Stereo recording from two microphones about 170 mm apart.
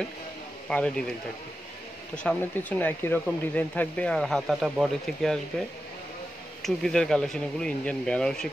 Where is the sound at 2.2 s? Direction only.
10° left (ahead or behind).